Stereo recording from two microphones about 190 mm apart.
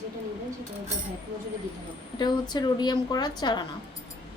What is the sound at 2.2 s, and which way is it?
A woman's voice, 20° left (ahead or behind).